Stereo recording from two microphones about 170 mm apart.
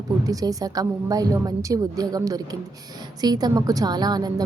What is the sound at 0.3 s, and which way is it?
A woman's voice, 20° right (ahead or behind).